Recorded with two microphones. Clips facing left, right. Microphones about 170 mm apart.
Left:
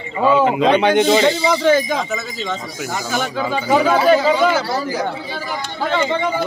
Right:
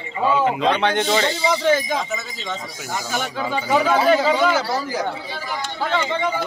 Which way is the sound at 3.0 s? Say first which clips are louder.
Left 4 dB; 90° left.